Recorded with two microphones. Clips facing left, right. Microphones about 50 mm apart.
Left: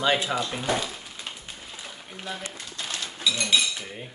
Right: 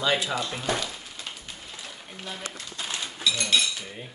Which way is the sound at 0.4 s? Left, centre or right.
Centre.